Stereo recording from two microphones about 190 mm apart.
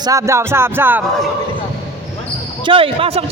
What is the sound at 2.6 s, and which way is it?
Speech, 30° right (ahead or behind).